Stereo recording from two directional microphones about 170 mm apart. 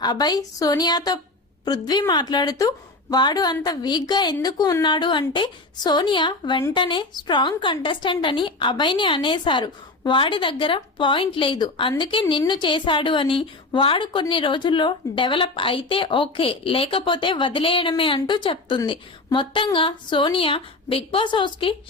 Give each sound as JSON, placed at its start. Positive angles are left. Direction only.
{"t": 0.0, "sound": "a woman's voice", "side_deg": 25}